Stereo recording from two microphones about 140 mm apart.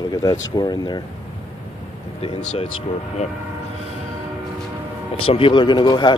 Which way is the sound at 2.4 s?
50° left (ahead or behind).